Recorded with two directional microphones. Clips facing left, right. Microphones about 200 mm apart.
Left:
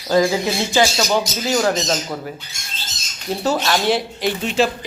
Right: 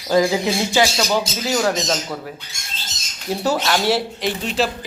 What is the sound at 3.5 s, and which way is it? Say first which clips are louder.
Speech: left 1 dB; 5° right (ahead or behind).